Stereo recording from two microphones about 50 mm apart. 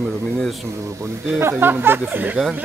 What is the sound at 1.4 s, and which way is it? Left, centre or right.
Speech, right.